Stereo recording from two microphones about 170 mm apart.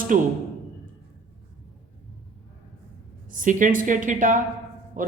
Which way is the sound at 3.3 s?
50° right (ahead or behind).